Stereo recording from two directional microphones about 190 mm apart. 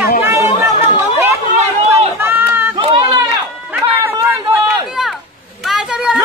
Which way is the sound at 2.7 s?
25° right (ahead or behind).